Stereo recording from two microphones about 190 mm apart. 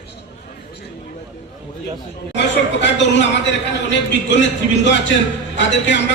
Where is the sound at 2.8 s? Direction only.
70° left (ahead or behind).